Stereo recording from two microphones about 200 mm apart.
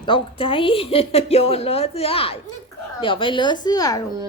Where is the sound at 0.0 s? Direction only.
25° left (ahead or behind).